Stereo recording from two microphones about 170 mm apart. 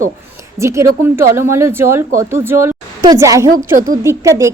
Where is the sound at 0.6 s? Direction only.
15° right (ahead or behind).